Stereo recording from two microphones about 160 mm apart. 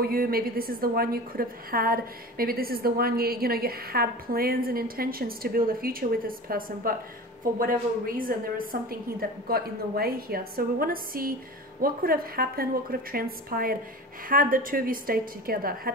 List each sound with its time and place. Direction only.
0.0 s a woman's voice: 70° right (ahead or behind)